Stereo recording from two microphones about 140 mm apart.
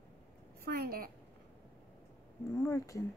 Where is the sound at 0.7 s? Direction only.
90° right.